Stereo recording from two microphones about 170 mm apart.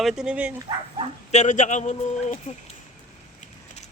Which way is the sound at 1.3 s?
45° left (ahead or behind).